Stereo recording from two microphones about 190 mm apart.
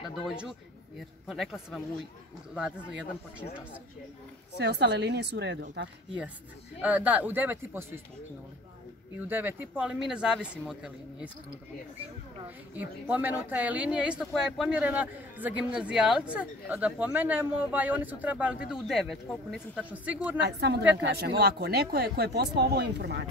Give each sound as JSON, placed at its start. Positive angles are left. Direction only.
{"t": 0.0, "sound": "speech", "side_deg": 0}
{"t": 4.6, "sound": "speech", "side_deg": -65}
{"t": 6.8, "sound": "speech", "side_deg": -10}
{"t": 9.3, "sound": "speech", "side_deg": -10}
{"t": 12.4, "sound": "speech", "side_deg": -10}
{"t": 20.3, "sound": "speech", "side_deg": -65}